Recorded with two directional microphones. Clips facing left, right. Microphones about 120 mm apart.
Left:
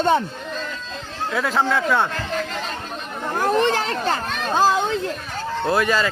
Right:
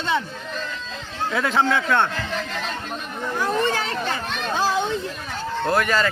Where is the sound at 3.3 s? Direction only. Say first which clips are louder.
Left 4 dB; 50° left (ahead or behind).